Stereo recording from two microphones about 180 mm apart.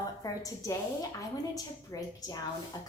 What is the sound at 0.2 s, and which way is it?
A woman's voice, 20° left (ahead or behind).